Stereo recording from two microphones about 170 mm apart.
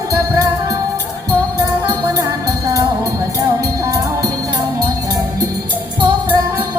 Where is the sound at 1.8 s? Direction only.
20° right (ahead or behind).